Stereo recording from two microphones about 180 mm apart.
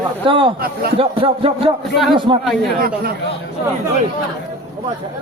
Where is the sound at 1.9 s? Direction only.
Centre (ahead or behind).